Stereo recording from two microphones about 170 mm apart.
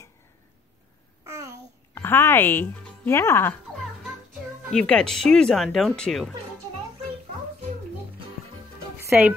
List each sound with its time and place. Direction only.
1.2 s babbling: 15° right (ahead or behind)
2.0 s speech: 15° left (ahead or behind)
4.7 s speech: 5° left (ahead or behind)
9.0 s music: 15° right (ahead or behind)